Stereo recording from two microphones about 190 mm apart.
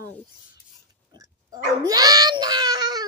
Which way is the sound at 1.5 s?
20° right (ahead or behind).